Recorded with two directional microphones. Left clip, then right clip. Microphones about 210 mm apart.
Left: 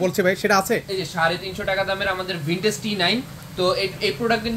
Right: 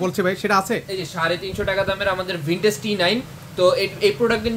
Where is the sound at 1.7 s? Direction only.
40° right (ahead or behind).